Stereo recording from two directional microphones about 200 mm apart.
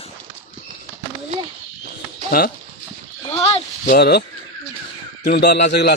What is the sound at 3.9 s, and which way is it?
A man's voice, 50° left (ahead or behind).